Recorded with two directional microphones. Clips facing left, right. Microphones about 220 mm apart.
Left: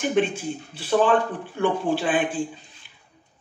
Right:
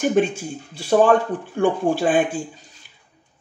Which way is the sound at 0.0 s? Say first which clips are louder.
Right 3 dB; 45° right (ahead or behind).